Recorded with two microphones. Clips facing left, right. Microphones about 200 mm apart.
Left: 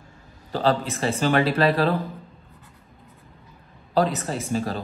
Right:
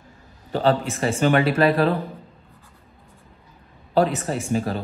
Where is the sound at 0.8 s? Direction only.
30° left (ahead or behind).